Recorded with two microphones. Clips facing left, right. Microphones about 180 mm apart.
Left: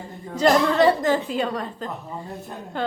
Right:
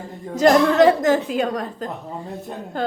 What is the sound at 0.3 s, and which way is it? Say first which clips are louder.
A woman's voice: right 4 dB; 45° right (ahead or behind).